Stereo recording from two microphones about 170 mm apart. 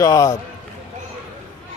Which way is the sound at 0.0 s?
20° left (ahead or behind).